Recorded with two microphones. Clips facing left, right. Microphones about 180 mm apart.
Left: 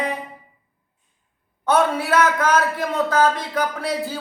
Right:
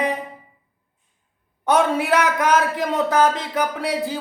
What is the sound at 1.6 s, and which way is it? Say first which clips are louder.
Speech: right 1 dB; 15° right (ahead or behind).